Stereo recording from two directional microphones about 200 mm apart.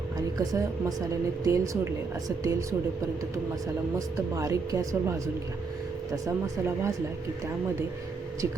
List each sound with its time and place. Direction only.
0.3 s speech: 15° right (ahead or behind)
3.9 s speech: 15° right (ahead or behind)